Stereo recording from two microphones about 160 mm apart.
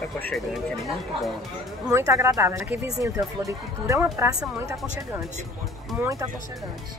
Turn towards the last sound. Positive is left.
turn(degrees=-20)  # may be behind; listen again after turning